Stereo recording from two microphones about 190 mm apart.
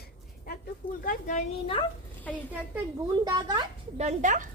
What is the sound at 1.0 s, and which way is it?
Speech, 40° left (ahead or behind).